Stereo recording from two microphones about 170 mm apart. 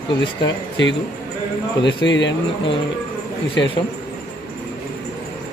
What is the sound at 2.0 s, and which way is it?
Speech, 90° left.